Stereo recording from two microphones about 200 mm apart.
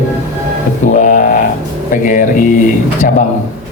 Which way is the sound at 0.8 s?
40° left (ahead or behind).